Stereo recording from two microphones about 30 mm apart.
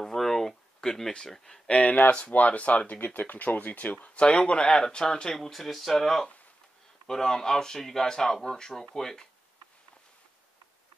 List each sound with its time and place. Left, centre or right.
0.0 s a sound: centre
0.8 s speech: centre
1.7 s speech: left
2.0 s speech: left
2.3 s speech: left
4.7 s speech: left
5.3 s speech: centre
7.1 s speech: centre